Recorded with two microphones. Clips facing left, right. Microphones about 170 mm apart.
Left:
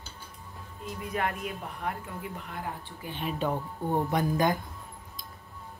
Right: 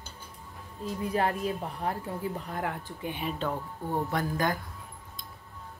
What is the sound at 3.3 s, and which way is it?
Speech, 15° left (ahead or behind).